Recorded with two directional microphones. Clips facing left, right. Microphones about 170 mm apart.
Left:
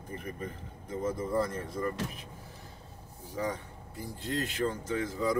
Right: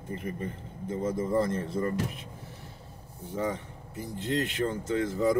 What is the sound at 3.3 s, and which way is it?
Speech, 25° right (ahead or behind).